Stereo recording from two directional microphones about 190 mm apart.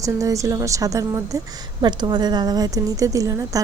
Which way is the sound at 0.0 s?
15° right (ahead or behind).